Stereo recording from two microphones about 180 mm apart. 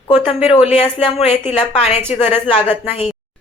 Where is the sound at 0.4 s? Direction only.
35° left (ahead or behind).